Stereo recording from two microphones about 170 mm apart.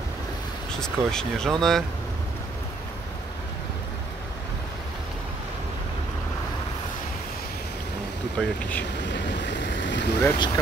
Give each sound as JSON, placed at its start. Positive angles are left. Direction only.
{"t": 0.7, "sound": "speech", "side_deg": 5}
{"t": 8.4, "sound": "speech", "side_deg": 10}
{"t": 9.0, "sound": "boat", "side_deg": 90}
{"t": 10.2, "sound": "speech", "side_deg": 20}